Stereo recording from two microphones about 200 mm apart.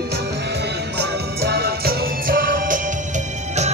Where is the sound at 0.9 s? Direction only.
55° right (ahead or behind).